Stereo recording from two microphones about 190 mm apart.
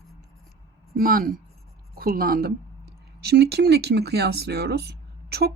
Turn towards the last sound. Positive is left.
turn(degrees=-60)  # may be behind; listen again after turning